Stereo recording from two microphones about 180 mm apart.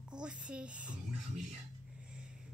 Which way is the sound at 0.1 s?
5° right (ahead or behind).